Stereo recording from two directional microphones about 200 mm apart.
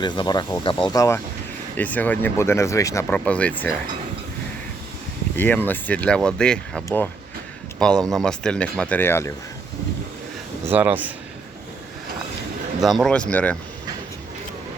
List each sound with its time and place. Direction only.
0.0 s speech: 20° left (ahead or behind)
5.4 s speech: 10° left (ahead or behind)
10.7 s speech: 10° right (ahead or behind)
12.8 s speech: centre (ahead or behind)